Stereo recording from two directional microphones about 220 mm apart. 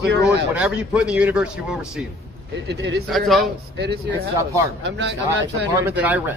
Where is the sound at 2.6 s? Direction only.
50° right (ahead or behind).